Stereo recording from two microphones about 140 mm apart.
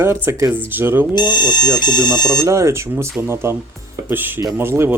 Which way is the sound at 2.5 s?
20° right (ahead or behind).